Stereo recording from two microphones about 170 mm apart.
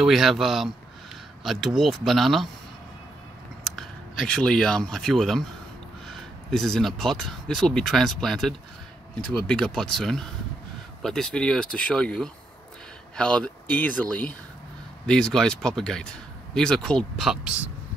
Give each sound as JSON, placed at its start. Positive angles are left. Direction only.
{"t": 0.0, "sound": "speech", "side_deg": 0}
{"t": 3.6, "sound": "speech", "side_deg": 0}
{"t": 15.0, "sound": "speech", "side_deg": 5}